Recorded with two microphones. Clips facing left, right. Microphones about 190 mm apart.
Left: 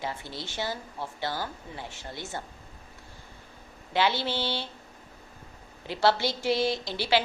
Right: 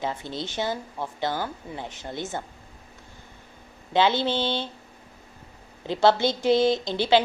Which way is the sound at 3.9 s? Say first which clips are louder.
Right 5 dB; 20° right (ahead or behind).